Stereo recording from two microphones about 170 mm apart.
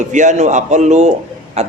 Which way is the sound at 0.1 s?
45° right (ahead or behind).